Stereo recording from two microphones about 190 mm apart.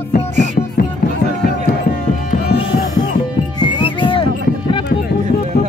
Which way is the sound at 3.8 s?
25° left (ahead or behind).